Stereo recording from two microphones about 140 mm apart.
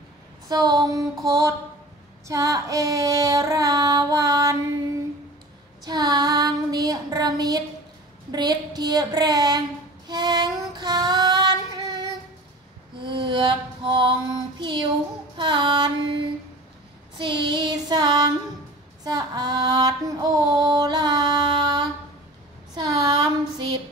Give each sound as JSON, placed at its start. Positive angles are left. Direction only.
{"t": 0.5, "sound": "female singing", "side_deg": -30}
{"t": 5.9, "sound": "child singing", "side_deg": -25}
{"t": 8.3, "sound": "female singing", "side_deg": -30}
{"t": 10.0, "sound": "child singing", "side_deg": -30}
{"t": 13.0, "sound": "mantra", "side_deg": -35}
{"t": 14.6, "sound": "child singing", "side_deg": -35}
{"t": 15.3, "sound": "female singing", "side_deg": -35}
{"t": 17.2, "sound": "child singing", "side_deg": -30}
{"t": 19.0, "sound": "female singing", "side_deg": -30}
{"t": 22.8, "sound": "a sound", "side_deg": -25}